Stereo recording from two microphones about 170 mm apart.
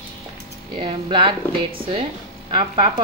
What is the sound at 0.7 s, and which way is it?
A woman's voice, 30° right (ahead or behind).